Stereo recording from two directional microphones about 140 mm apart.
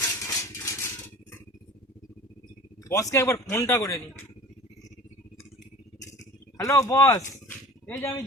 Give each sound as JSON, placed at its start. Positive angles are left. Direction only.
{"t": 0.0, "sound": "a sound", "side_deg": 25}
{"t": 2.9, "sound": "a man's voice", "side_deg": 20}
{"t": 6.6, "sound": "speech", "side_deg": 25}